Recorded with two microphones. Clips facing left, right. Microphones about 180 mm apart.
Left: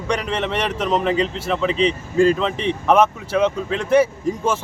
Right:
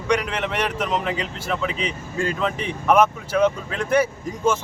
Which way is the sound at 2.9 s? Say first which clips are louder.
Left 1 dB; centre (ahead or behind).